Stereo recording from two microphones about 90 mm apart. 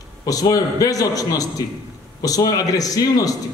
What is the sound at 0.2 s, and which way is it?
A man's voice, 40° left (ahead or behind).